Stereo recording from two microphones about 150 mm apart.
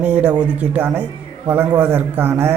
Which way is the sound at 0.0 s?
10° right (ahead or behind).